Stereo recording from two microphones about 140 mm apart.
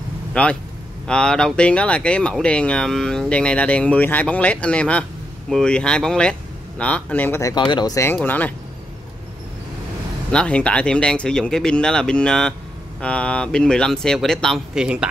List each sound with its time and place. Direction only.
0.3 s speech: 10° left (ahead or behind)
7.5 s speech: 30° left (ahead or behind); by 8.5 s 10° left (ahead or behind)
10.3 s speech: 5° left (ahead or behind)